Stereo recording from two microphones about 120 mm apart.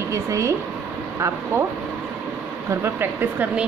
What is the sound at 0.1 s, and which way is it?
Speech, 25° right (ahead or behind).